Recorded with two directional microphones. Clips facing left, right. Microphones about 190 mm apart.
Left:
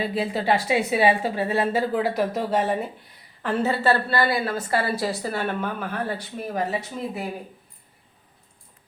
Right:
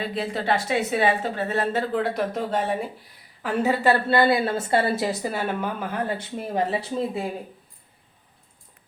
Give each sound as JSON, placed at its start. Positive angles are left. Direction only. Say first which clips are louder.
{"t": 0.0, "sound": "speech", "louder": "left 2 dB", "side_deg": 5}
{"t": 3.4, "sound": "a woman's voice", "louder": "right 1 dB", "side_deg": -15}